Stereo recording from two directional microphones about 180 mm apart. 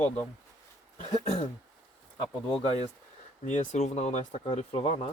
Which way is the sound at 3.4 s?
40° left (ahead or behind).